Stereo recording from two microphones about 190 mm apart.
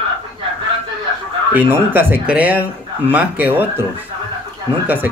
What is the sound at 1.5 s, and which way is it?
Speech, 10° right (ahead or behind).